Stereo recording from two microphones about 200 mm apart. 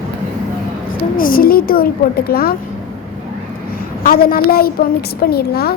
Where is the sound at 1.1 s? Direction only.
45° left (ahead or behind).